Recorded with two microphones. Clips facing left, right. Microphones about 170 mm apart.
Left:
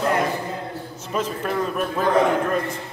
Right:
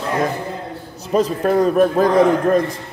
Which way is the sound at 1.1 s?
40° right (ahead or behind).